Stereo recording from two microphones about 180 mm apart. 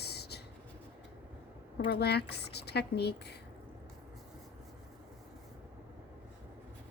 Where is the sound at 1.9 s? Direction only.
65° left (ahead or behind).